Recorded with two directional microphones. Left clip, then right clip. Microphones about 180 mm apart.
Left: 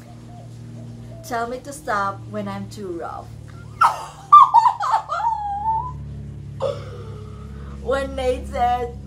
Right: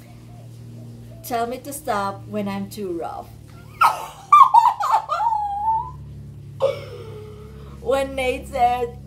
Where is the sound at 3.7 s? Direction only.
25° right (ahead or behind).